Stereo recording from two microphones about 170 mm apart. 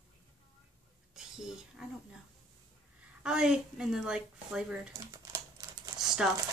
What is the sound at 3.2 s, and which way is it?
A woman's voice, 5° right (ahead or behind).